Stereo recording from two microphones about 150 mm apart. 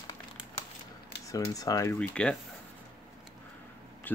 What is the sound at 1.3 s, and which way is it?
Speech, 20° left (ahead or behind).